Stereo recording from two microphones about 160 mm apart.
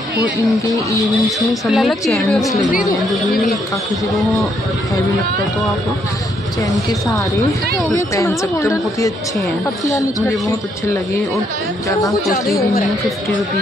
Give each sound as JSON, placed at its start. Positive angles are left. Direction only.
{"t": 1.5, "sound": "a woman's voice", "side_deg": 0}
{"t": 6.7, "sound": "speech", "side_deg": 20}
{"t": 12.3, "sound": "a woman's voice", "side_deg": 65}